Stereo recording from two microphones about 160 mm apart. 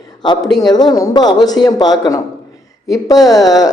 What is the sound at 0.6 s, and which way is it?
Speech, 25° left (ahead or behind).